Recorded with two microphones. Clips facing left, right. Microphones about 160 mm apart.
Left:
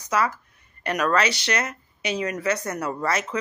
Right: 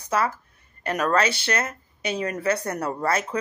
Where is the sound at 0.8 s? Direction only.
30° right (ahead or behind).